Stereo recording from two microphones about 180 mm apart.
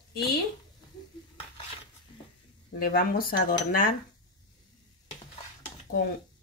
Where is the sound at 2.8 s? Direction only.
55° left (ahead or behind).